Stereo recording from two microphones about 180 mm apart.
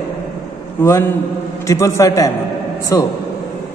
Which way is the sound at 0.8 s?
15° left (ahead or behind).